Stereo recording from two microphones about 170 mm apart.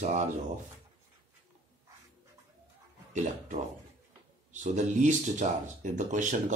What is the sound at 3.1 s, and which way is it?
Speech, 45° right (ahead or behind).